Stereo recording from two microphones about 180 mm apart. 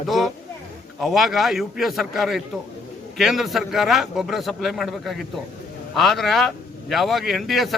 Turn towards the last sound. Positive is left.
turn(degrees=0)  # may be behind; listen again after turning